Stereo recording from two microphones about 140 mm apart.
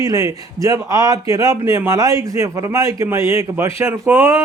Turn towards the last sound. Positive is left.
turn(degrees=-15)  # may be behind; listen again after turning